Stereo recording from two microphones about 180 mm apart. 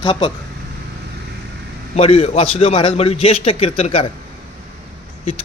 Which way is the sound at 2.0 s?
35° left (ahead or behind).